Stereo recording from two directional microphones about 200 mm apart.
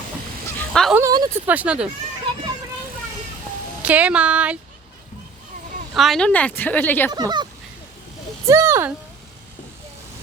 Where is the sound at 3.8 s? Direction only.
5° right (ahead or behind).